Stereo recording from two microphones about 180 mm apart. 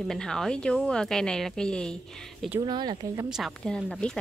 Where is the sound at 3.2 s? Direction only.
Centre (ahead or behind).